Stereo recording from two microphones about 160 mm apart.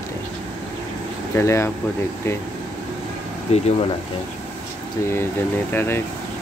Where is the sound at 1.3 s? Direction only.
15° left (ahead or behind).